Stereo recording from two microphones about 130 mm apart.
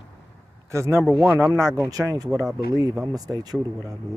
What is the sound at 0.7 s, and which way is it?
Speech, 20° right (ahead or behind).